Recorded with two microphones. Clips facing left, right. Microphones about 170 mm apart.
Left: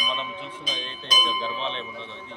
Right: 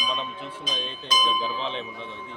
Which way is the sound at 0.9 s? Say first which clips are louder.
Right 3 dB; centre (ahead or behind).